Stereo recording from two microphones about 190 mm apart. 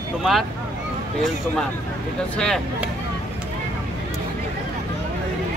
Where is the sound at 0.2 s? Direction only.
Centre (ahead or behind).